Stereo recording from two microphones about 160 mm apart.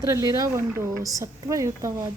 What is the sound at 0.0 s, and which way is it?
Speech, 20° right (ahead or behind).